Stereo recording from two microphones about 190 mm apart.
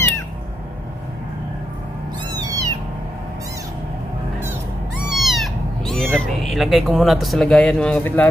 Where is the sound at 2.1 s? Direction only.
20° right (ahead or behind).